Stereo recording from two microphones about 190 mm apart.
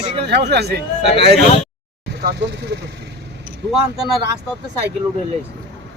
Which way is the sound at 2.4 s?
65° right (ahead or behind).